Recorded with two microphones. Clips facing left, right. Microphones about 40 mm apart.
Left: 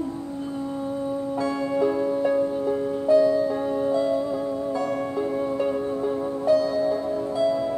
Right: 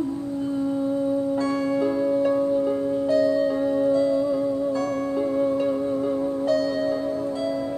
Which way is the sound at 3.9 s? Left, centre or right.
Centre.